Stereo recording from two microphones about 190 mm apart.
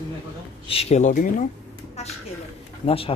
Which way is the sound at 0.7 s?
30° left (ahead or behind).